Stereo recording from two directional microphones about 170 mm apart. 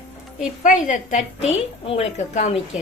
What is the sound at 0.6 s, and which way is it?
A woman's voice, 50° left (ahead or behind).